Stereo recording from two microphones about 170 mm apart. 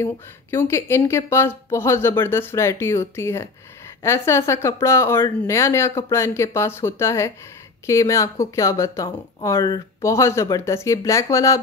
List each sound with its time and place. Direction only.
0.0 s speech: 15° left (ahead or behind)